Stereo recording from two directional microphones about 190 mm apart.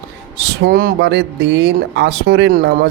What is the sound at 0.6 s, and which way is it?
Speech, 55° right (ahead or behind).